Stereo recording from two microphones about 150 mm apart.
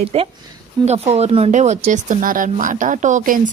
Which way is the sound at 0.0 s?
40° right (ahead or behind).